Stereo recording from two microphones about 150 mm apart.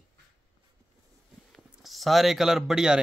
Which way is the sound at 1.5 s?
Centre (ahead or behind).